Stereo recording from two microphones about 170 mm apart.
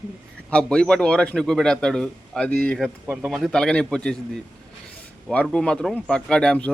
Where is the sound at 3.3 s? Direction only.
Centre (ahead or behind).